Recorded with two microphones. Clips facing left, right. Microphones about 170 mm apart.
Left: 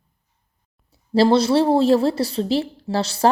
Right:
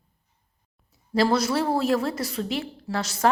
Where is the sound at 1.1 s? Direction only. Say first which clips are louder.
Left 6 dB; 30° left (ahead or behind).